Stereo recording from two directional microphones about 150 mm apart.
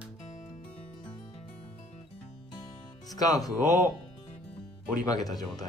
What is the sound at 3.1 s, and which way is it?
Speech, 25° left (ahead or behind).